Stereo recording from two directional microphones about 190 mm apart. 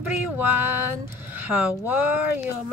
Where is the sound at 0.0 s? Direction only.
10° right (ahead or behind).